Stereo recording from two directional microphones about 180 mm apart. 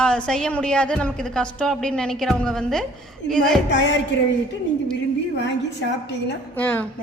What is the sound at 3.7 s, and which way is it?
Speech, 85° left.